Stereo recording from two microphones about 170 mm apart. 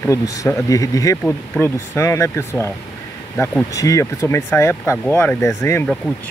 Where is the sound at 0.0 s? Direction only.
20° left (ahead or behind).